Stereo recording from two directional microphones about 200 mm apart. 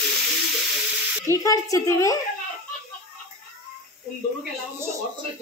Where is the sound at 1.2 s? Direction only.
15° left (ahead or behind).